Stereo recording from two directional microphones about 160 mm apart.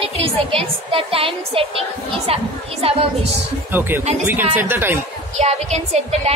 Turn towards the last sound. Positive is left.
turn(degrees=-40)  # may be behind; listen again after turning